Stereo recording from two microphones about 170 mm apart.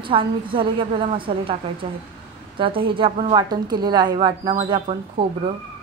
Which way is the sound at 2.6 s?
30° right (ahead or behind).